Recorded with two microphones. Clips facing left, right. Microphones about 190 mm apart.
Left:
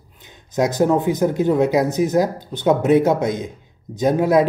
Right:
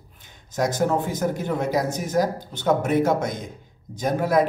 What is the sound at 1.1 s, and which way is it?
Speech, 20° left (ahead or behind).